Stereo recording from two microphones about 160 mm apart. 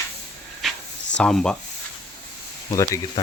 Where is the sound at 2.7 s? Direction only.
20° left (ahead or behind).